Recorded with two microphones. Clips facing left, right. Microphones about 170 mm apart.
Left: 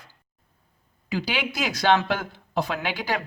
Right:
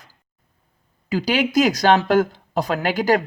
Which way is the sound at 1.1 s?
40° right (ahead or behind).